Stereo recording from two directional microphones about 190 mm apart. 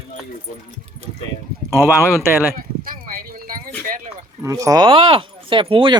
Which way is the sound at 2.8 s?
50° right (ahead or behind).